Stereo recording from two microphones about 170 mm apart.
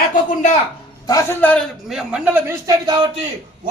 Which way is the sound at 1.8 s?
5° right (ahead or behind).